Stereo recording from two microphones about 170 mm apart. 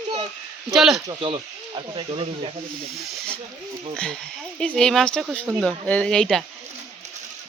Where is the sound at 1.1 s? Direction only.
30° right (ahead or behind).